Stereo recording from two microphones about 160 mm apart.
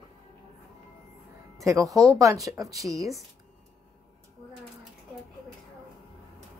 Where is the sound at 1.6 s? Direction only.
20° right (ahead or behind).